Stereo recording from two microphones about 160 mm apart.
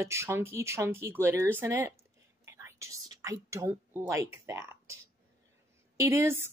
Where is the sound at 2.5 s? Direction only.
20° right (ahead or behind).